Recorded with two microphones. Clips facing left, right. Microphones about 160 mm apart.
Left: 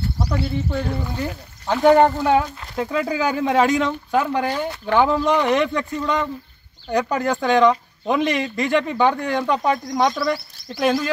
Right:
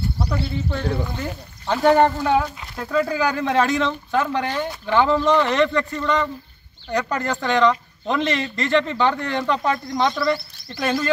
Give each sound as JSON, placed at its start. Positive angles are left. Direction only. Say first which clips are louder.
{"t": 0.7, "sound": "speech", "louder": "even", "side_deg": 5}